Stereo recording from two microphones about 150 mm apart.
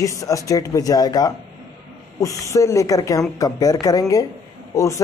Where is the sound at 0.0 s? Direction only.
20° left (ahead or behind).